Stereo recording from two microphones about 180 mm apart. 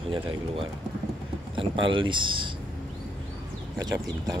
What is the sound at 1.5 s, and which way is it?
Speech, 30° right (ahead or behind).